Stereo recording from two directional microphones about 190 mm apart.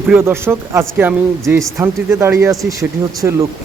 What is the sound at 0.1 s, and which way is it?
A man's voice, 10° right (ahead or behind).